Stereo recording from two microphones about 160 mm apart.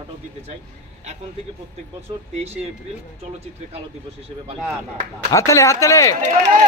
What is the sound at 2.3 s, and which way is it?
Speech, 40° right (ahead or behind).